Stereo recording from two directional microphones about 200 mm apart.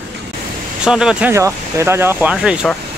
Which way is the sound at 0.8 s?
5° right (ahead or behind).